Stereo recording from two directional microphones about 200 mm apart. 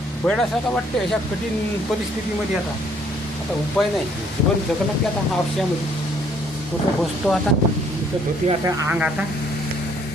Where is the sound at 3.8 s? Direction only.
5° left (ahead or behind).